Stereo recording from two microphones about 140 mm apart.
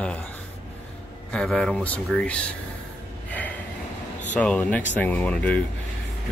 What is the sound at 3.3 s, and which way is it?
Snort, 10° left (ahead or behind).